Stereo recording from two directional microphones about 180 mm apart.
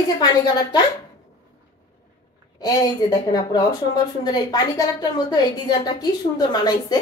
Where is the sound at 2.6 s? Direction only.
20° left (ahead or behind).